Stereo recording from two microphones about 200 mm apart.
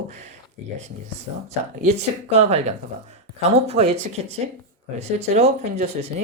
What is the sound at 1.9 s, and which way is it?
Speech, 35° right (ahead or behind).